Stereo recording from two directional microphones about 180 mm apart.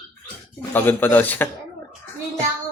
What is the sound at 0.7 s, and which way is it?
Speech, 10° left (ahead or behind).